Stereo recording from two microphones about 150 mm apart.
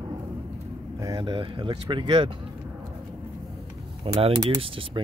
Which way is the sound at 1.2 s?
35° right (ahead or behind).